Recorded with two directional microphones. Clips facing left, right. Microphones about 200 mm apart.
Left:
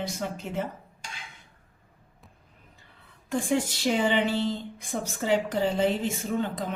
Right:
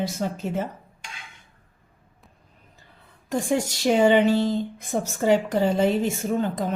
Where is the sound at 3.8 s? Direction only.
45° right (ahead or behind).